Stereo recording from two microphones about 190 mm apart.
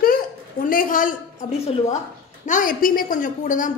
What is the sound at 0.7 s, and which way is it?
Speech, 45° left (ahead or behind).